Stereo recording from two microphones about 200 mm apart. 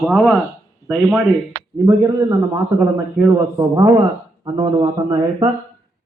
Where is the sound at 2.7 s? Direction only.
10° right (ahead or behind).